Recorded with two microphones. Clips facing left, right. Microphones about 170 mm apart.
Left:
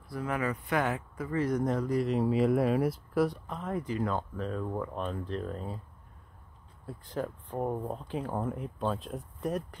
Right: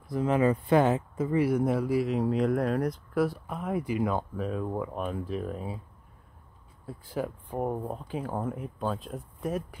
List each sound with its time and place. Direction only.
0.1 s speech: 25° right (ahead or behind)
1.4 s speech: 10° right (ahead or behind)
6.9 s speech: 5° right (ahead or behind)